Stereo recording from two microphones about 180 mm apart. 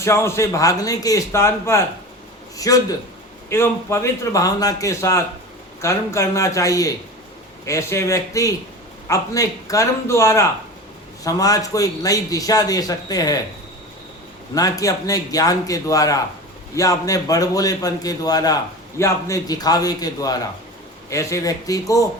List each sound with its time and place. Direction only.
0.0 s a man's voice: 15° left (ahead or behind)
14.5 s a man's voice: 20° left (ahead or behind)